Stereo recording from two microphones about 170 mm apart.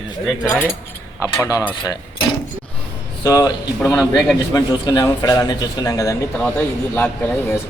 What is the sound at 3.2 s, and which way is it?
Speech, 20° left (ahead or behind).